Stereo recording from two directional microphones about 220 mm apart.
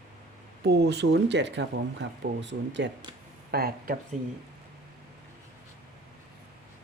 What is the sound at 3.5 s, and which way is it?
Speech, 45° right (ahead or behind).